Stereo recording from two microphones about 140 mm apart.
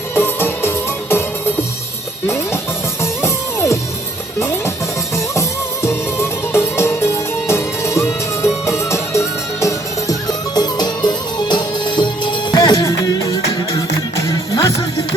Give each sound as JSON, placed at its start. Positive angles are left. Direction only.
{"t": 0.1, "sound": "music", "side_deg": 15}